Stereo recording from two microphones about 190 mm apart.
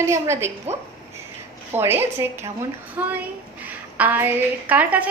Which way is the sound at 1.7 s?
10° right (ahead or behind).